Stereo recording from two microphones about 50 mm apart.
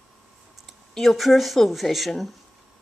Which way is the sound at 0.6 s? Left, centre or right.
Centre.